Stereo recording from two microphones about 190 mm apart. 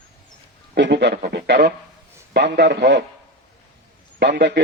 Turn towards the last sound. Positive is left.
turn(degrees=-65)  # may be behind; listen again after turning